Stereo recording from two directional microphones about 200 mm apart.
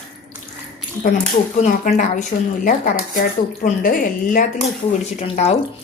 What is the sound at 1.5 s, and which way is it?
Speech, 40° left (ahead or behind).